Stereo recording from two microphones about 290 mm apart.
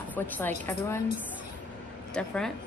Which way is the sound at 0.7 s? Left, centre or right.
Centre.